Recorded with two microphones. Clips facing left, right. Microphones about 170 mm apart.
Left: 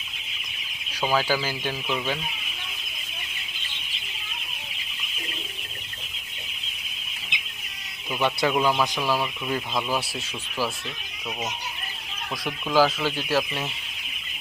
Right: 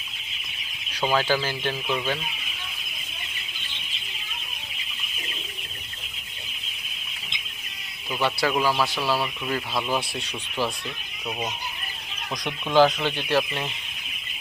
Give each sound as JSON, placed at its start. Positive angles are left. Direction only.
{"t": 1.0, "sound": "speech", "side_deg": 10}
{"t": 8.2, "sound": "speech", "side_deg": 20}
{"t": 8.5, "sound": "speech", "side_deg": -5}
{"t": 8.8, "sound": "speech", "side_deg": 15}
{"t": 12.5, "sound": "speech", "side_deg": 5}